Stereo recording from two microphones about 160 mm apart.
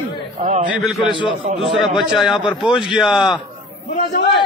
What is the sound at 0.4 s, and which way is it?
Speech, 55° right (ahead or behind).